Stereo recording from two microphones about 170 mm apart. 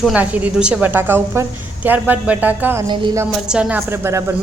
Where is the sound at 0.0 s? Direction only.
5° right (ahead or behind).